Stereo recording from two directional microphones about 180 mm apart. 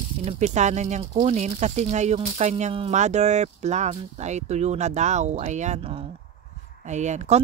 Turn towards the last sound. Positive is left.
turn(degrees=-40)  # may be behind; listen again after turning